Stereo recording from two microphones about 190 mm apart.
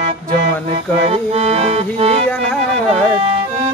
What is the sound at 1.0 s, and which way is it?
Music, 35° right (ahead or behind).